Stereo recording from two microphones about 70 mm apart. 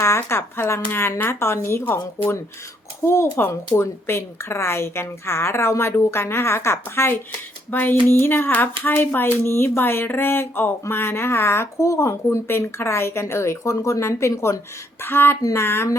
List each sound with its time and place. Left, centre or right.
0.0 s speech: left
15.0 s speech: left